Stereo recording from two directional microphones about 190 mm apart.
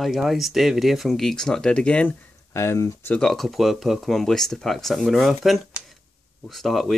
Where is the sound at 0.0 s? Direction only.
Centre (ahead or behind).